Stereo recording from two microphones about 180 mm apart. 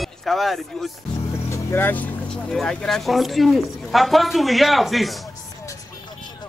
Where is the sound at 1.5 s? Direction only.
15° left (ahead or behind).